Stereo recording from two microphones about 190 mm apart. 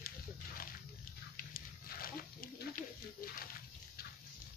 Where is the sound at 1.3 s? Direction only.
50° left (ahead or behind).